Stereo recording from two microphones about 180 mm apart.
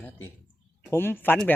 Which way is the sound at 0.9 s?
10° left (ahead or behind).